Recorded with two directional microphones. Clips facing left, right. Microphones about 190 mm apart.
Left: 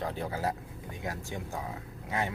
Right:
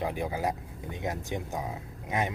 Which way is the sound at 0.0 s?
15° right (ahead or behind).